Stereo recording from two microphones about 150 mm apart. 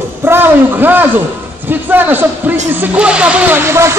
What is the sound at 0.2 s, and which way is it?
A man's voice, 15° right (ahead or behind).